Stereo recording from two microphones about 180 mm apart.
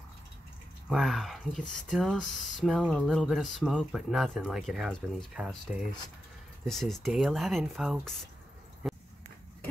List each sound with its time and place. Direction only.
0.8 s speech: centre (ahead or behind)